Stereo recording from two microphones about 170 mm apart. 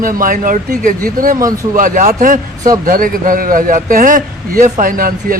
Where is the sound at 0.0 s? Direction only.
55° right (ahead or behind).